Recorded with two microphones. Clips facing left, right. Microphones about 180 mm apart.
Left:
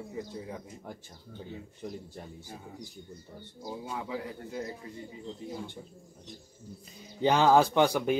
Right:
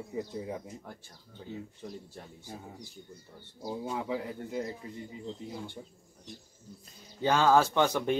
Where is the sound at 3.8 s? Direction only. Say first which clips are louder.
Right 3 dB; 20° right (ahead or behind).